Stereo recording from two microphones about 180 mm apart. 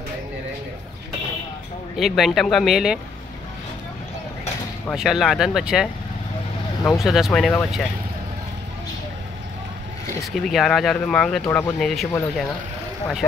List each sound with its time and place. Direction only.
2.0 s speech: centre (ahead or behind)
4.9 s speech: centre (ahead or behind)
6.9 s speech: centre (ahead or behind)
10.3 s speech: centre (ahead or behind)